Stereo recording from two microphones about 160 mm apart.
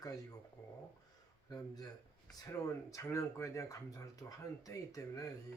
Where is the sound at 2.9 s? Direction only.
20° left (ahead or behind).